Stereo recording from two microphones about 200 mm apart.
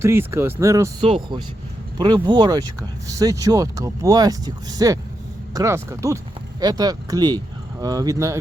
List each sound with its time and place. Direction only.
0.0 s speech: 10° right (ahead or behind)
1.0 s speech: 25° right (ahead or behind)